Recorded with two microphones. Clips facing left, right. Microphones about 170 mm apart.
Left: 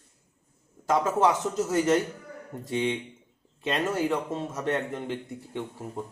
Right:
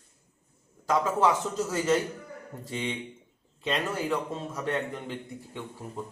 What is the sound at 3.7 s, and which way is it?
Speech, 25° left (ahead or behind).